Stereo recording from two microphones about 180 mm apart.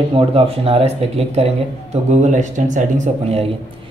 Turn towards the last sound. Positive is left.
turn(degrees=-40)  # may be behind; listen again after turning